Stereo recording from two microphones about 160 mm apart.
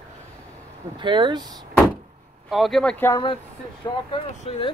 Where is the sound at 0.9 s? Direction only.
30° right (ahead or behind).